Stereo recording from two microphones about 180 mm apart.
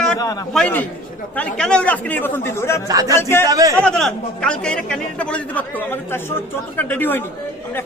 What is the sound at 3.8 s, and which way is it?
A man's voice, 5° left (ahead or behind).